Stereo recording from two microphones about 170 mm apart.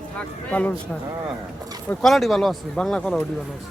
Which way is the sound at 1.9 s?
Centre (ahead or behind).